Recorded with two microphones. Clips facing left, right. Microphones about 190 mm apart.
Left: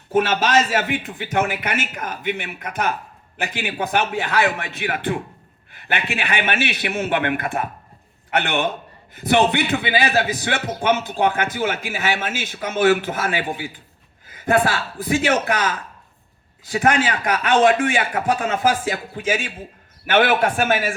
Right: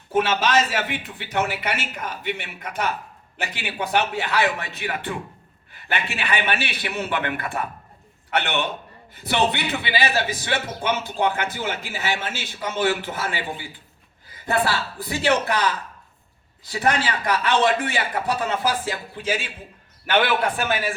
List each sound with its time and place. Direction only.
0.1 s speech: 50° left (ahead or behind)
17.1 s speech: 50° left (ahead or behind)